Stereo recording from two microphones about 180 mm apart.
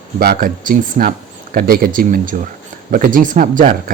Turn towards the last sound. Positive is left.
turn(degrees=-50)  # may be behind; listen again after turning